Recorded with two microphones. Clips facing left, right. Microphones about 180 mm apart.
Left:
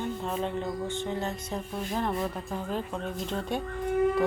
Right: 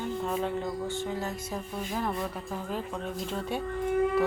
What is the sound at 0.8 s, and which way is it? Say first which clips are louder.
Music: even; 20° left (ahead or behind).